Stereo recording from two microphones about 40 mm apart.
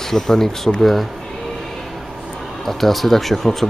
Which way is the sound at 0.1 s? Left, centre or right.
Centre.